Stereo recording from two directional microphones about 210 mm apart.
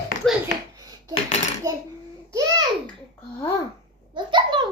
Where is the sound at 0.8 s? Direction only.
20° right (ahead or behind).